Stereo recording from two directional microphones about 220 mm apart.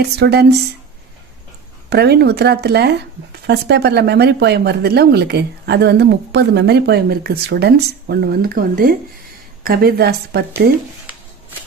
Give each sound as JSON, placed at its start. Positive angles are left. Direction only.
{"t": 0.0, "sound": "speech", "side_deg": -50}
{"t": 1.9, "sound": "speech", "side_deg": -50}